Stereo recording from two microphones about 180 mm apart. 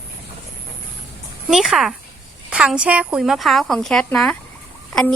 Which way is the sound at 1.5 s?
Centre (ahead or behind).